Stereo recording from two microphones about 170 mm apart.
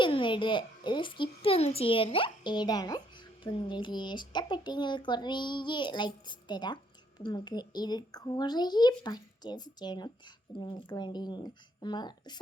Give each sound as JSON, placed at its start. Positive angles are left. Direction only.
{"t": 0.0, "sound": "speech", "side_deg": 30}